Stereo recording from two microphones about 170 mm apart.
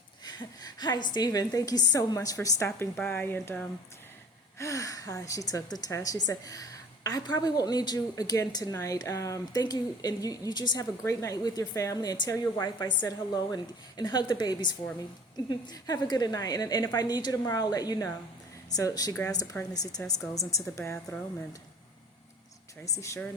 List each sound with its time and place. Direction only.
0.3 s a woman's voice: 25° left (ahead or behind)
23.0 s speech: 15° left (ahead or behind)